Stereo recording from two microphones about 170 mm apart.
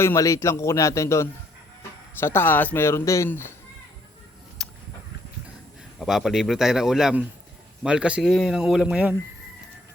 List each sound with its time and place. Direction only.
0.0 s a man's voice: 15° left (ahead or behind)
4.6 s a sound: centre (ahead or behind)
6.0 s a man's voice: centre (ahead or behind)